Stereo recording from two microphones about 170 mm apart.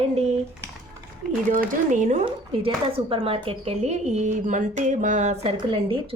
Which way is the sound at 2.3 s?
30° right (ahead or behind).